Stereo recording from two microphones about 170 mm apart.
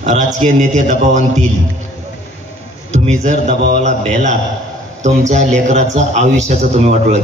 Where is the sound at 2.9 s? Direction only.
45° right (ahead or behind).